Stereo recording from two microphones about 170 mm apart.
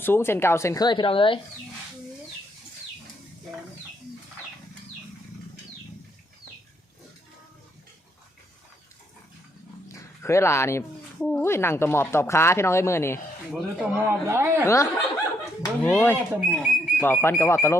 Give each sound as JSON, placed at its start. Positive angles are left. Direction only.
{"t": 0.0, "sound": "a woman's voice", "side_deg": 15}
{"t": 9.9, "sound": "a woman's voice", "side_deg": 15}
{"t": 13.5, "sound": "speech", "side_deg": -5}
{"t": 14.0, "sound": "speech", "side_deg": -15}
{"t": 15.8, "sound": "a woman's voice", "side_deg": 10}